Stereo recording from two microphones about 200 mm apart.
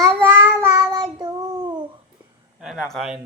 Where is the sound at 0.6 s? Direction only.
15° right (ahead or behind).